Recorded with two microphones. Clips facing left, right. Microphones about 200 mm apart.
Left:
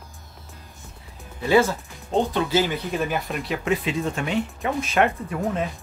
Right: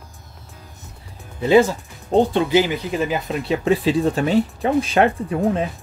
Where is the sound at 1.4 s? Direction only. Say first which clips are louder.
Right 5 dB; 20° right (ahead or behind).